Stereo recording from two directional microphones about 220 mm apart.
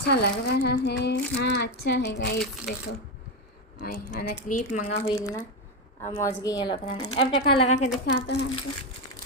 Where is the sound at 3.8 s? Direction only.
40° left (ahead or behind).